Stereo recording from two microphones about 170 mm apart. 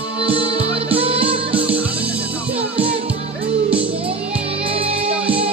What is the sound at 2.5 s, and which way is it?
Music, 35° right (ahead or behind).